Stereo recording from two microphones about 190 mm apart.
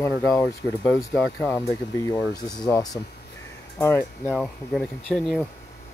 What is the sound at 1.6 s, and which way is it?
Speech, 15° left (ahead or behind).